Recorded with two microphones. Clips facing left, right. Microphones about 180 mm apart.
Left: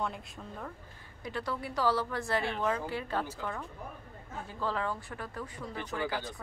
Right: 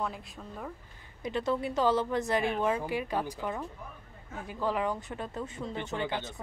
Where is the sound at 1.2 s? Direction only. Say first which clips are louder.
Right 6 dB; 20° right (ahead or behind).